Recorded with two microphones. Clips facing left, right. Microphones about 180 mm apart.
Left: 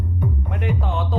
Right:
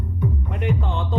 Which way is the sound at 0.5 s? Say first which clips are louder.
Left 1 dB; centre (ahead or behind).